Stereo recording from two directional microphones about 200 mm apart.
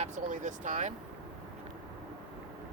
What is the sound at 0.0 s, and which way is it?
Speech, 40° right (ahead or behind).